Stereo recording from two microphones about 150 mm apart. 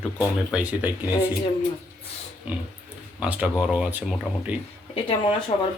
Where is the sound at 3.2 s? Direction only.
5° right (ahead or behind).